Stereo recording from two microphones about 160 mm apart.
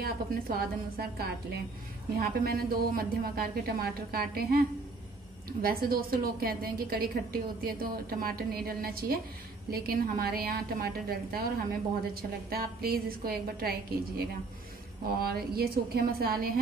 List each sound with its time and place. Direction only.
0.0 s a woman's voice: 75° right (ahead or behind)